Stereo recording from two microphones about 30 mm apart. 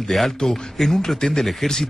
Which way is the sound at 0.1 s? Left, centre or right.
Centre.